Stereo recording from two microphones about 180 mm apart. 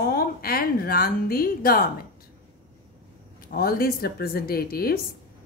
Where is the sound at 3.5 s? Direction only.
55° left (ahead or behind).